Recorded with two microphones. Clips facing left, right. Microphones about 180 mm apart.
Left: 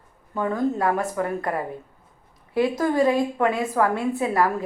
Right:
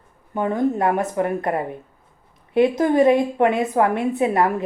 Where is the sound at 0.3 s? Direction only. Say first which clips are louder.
Right 3 dB; 20° right (ahead or behind).